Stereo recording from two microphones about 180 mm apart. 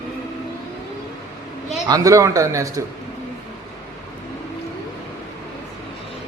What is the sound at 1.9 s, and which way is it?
Speech, 20° right (ahead or behind).